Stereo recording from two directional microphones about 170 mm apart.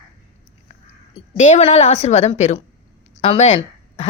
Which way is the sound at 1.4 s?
40° left (ahead or behind).